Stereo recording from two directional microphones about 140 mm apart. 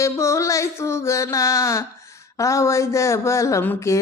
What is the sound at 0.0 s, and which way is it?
Speech, 20° left (ahead or behind).